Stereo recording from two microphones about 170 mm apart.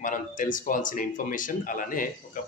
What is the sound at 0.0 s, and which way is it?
A man's voice, 50° left (ahead or behind).